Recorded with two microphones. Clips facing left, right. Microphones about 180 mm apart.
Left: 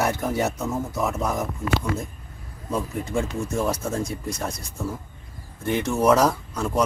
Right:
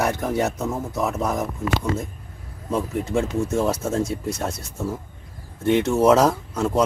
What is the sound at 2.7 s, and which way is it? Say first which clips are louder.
A man's voice: right 3 dB; 5° right (ahead or behind).